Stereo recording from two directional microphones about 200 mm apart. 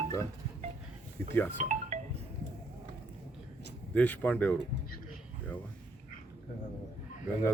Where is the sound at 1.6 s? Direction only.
35° right (ahead or behind).